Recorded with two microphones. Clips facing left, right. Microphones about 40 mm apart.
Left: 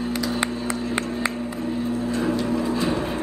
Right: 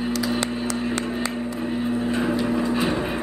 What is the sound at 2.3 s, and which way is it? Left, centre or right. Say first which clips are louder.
Music: right 1 dB; centre.